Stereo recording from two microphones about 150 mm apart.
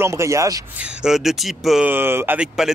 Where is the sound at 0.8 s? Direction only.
5° right (ahead or behind).